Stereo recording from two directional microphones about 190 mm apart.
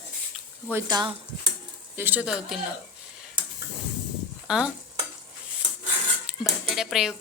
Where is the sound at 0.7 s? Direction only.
20° right (ahead or behind).